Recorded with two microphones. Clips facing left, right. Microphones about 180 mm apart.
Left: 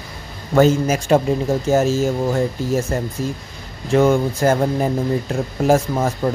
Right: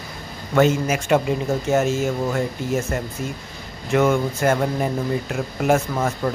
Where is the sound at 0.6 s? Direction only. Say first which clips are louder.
Left 3 dB; 35° left (ahead or behind).